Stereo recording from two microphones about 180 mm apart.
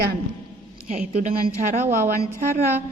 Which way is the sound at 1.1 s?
45° right (ahead or behind).